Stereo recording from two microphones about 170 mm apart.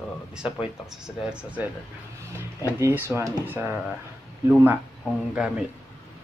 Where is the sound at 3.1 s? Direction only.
10° right (ahead or behind).